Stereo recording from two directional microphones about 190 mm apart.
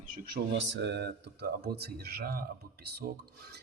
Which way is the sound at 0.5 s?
70° right (ahead or behind).